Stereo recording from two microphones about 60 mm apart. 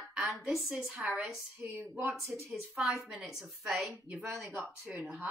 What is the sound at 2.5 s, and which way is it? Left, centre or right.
A woman's voice, centre.